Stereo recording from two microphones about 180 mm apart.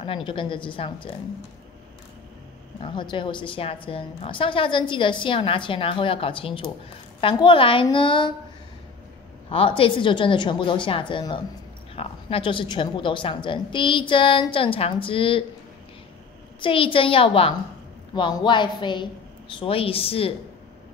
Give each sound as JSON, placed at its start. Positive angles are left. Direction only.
{"t": 0.0, "sound": "a woman's voice", "side_deg": 30}
{"t": 2.8, "sound": "a woman's voice", "side_deg": 25}
{"t": 9.5, "sound": "a woman's voice", "side_deg": 30}
{"t": 16.6, "sound": "a woman's voice", "side_deg": 30}